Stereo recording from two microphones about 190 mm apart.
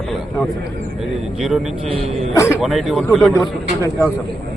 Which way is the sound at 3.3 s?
15° left (ahead or behind).